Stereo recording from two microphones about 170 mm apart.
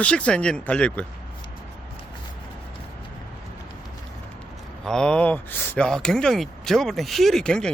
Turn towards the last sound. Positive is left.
turn(degrees=5)  # may be behind; listen again after turning